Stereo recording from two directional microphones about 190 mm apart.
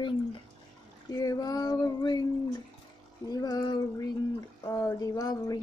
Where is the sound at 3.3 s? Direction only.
20° left (ahead or behind).